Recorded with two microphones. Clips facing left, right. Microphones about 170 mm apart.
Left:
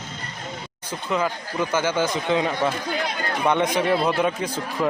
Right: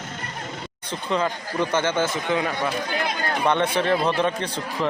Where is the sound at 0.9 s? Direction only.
5° left (ahead or behind).